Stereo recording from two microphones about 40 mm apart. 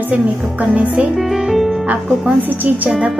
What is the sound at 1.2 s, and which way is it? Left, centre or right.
Speech, centre.